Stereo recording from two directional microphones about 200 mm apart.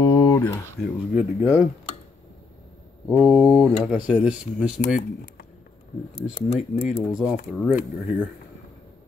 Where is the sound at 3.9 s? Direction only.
5° right (ahead or behind).